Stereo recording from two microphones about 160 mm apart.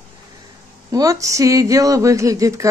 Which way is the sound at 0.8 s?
20° right (ahead or behind).